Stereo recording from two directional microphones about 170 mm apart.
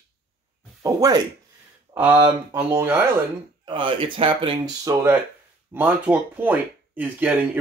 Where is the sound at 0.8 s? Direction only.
20° right (ahead or behind).